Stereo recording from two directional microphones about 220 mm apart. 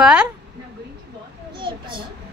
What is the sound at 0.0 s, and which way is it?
Speech, 5° right (ahead or behind).